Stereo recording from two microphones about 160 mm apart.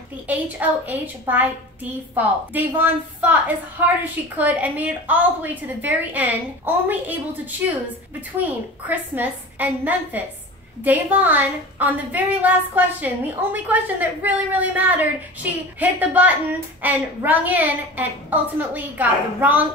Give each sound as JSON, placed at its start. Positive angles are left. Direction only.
{"t": 0.3, "sound": "a woman's voice", "side_deg": -10}